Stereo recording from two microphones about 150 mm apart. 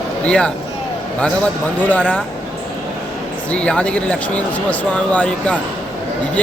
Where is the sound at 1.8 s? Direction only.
10° left (ahead or behind).